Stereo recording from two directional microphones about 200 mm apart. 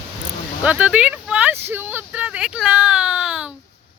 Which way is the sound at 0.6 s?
5° right (ahead or behind).